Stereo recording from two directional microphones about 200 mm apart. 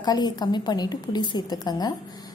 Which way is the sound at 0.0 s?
20° left (ahead or behind).